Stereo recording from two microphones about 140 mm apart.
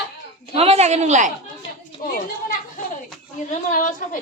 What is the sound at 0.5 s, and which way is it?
Speech, 45° right (ahead or behind).